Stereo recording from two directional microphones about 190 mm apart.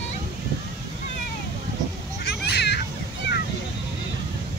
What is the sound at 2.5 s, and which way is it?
Children playing, 60° left (ahead or behind).